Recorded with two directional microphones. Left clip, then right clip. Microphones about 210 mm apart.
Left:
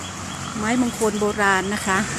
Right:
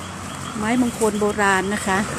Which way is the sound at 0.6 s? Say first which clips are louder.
Right 1 dB; centre (ahead or behind).